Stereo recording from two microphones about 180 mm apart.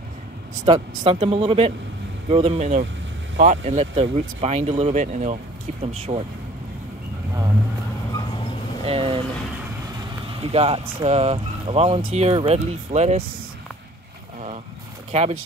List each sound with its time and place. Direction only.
0.7 s speech: 30° right (ahead or behind)
8.8 s speech: 30° right (ahead or behind)
10.2 s speech: 30° right (ahead or behind)
15.0 s speech: 35° right (ahead or behind)